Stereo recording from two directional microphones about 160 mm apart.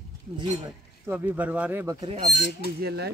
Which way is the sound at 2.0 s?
40° right (ahead or behind).